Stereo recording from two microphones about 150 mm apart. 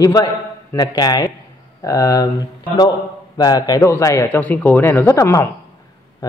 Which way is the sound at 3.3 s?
25° left (ahead or behind).